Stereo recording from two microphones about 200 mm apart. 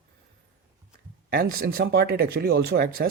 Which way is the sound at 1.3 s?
45° right (ahead or behind).